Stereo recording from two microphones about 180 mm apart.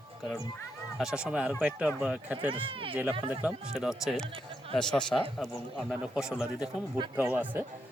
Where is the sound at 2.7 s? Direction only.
30° right (ahead or behind).